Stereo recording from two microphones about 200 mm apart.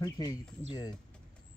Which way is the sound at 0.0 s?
20° left (ahead or behind).